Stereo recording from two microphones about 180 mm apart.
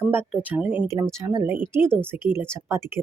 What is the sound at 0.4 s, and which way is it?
Speech, 10° right (ahead or behind).